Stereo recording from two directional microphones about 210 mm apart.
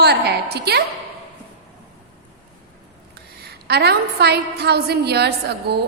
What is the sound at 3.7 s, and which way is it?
A woman's voice, 50° right (ahead or behind).